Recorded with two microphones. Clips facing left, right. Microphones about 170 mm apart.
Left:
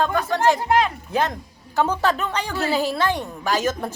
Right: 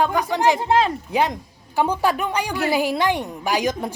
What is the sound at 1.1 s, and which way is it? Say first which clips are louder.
A woman's voice: right 2 dB; 15° right (ahead or behind).